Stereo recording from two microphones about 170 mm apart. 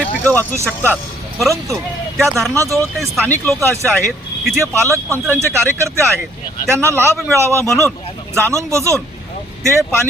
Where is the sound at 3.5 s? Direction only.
15° right (ahead or behind).